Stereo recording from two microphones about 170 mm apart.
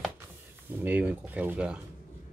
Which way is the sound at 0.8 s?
10° right (ahead or behind).